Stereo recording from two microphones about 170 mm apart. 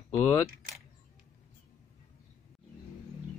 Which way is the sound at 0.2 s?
15° left (ahead or behind).